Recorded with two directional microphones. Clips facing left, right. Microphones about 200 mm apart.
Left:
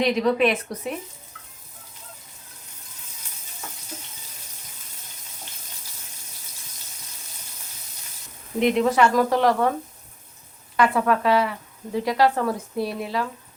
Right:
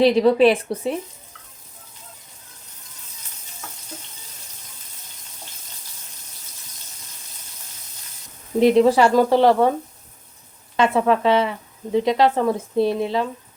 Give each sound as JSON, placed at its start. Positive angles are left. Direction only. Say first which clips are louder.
{"t": 0.0, "sound": "a woman's voice", "louder": "right 6 dB", "side_deg": -30}
{"t": 8.5, "sound": "speech", "louder": "right 5 dB", "side_deg": -30}
{"t": 10.8, "sound": "speech", "louder": "right 3 dB", "side_deg": -25}